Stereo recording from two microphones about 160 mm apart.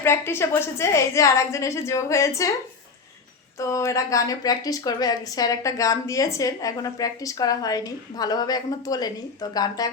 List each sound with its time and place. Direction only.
0.0 s a woman's voice: 15° left (ahead or behind)
3.6 s a woman's voice: 20° left (ahead or behind)